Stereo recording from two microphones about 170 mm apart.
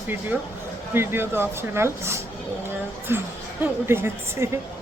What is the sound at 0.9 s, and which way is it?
Speech, 15° right (ahead or behind).